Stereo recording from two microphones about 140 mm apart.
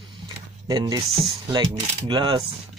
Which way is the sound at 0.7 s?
30° right (ahead or behind).